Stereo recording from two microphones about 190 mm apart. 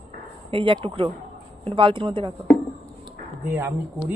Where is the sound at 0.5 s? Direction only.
25° right (ahead or behind).